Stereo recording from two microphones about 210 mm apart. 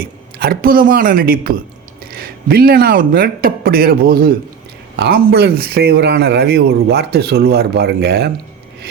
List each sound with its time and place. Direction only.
0.0 s a woman's voice: 45° right (ahead or behind)